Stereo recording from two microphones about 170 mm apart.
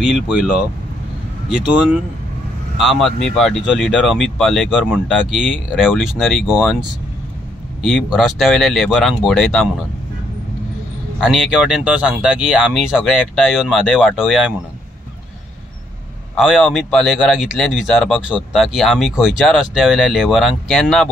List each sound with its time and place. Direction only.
0.0 s speech: 5° right (ahead or behind)
11.1 s speech: centre (ahead or behind)
16.3 s speech: centre (ahead or behind)